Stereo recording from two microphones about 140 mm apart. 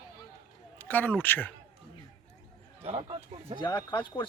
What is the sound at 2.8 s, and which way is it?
Speech, 45° right (ahead or behind).